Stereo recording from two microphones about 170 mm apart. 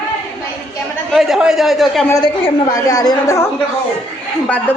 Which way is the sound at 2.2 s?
30° left (ahead or behind).